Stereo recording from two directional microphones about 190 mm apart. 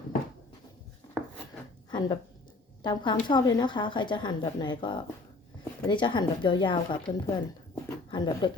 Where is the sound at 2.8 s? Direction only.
25° left (ahead or behind).